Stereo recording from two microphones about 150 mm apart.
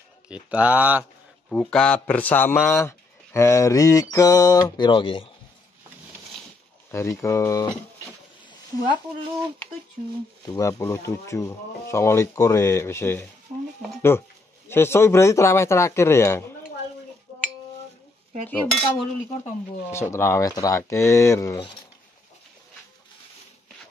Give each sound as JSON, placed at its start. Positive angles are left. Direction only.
{"t": 0.3, "sound": "speech", "side_deg": -10}
{"t": 1.5, "sound": "a man's voice", "side_deg": 5}
{"t": 6.9, "sound": "a man's voice", "side_deg": 20}
{"t": 8.5, "sound": "a sound", "side_deg": 30}
{"t": 10.4, "sound": "a man's voice", "side_deg": 20}
{"t": 18.5, "sound": "a man's voice", "side_deg": 5}
{"t": 19.9, "sound": "a man's voice", "side_deg": 15}